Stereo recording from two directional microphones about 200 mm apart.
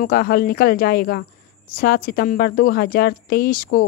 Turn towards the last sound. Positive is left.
turn(degrees=45)  # may be behind; listen again after turning